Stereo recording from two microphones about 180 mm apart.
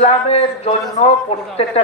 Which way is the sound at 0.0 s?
35° left (ahead or behind).